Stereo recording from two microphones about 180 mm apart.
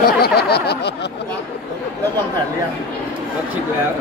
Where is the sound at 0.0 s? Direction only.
60° left (ahead or behind).